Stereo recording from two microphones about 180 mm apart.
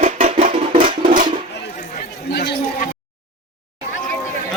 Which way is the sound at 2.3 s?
65° left (ahead or behind).